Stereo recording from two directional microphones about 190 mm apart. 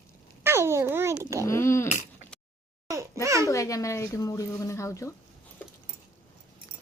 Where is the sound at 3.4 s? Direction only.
15° left (ahead or behind).